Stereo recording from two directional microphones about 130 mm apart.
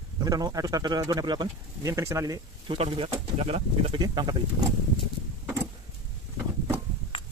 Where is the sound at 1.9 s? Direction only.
25° right (ahead or behind).